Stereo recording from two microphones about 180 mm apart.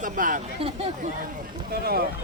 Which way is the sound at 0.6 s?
35° right (ahead or behind).